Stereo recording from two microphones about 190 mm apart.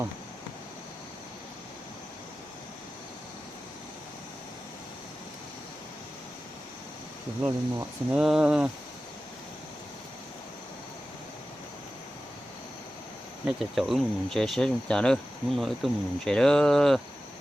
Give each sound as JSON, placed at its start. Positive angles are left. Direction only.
{"t": 7.4, "sound": "speech", "side_deg": -5}
{"t": 13.6, "sound": "speech", "side_deg": 0}